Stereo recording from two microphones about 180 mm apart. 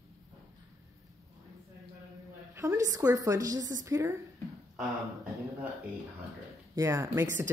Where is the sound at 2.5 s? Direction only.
15° right (ahead or behind).